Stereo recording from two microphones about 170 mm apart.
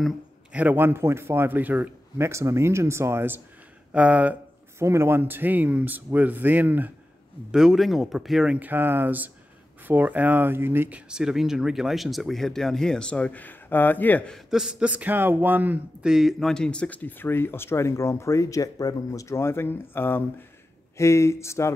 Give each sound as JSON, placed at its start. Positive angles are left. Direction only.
{"t": 0.0, "sound": "speech", "side_deg": -10}